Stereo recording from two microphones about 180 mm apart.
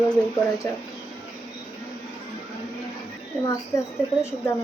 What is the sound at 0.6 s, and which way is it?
Speech, 15° left (ahead or behind).